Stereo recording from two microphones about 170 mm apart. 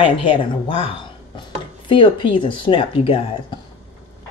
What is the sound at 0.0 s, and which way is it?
A woman's voice, 30° left (ahead or behind).